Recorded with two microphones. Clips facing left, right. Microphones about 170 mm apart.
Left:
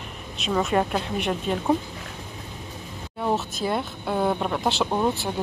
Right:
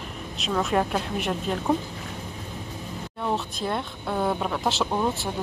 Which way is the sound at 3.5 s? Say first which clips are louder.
Left 2 dB; 5° left (ahead or behind).